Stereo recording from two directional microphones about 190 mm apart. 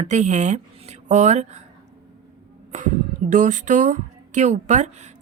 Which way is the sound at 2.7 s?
40° right (ahead or behind).